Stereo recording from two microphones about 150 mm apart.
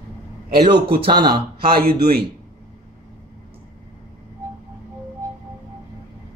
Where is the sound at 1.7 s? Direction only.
90° right.